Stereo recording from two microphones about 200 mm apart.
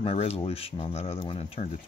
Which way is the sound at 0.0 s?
30° left (ahead or behind).